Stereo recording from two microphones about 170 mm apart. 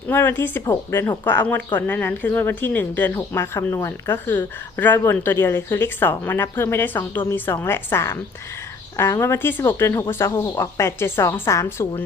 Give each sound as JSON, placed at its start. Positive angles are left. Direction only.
{"t": 0.1, "sound": "speech", "side_deg": 15}